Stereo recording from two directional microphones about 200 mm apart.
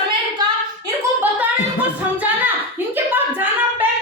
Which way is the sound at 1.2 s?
10° right (ahead or behind).